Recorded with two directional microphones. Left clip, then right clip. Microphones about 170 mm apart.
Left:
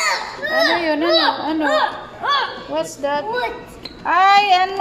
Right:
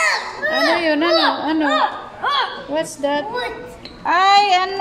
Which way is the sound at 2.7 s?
20° right (ahead or behind).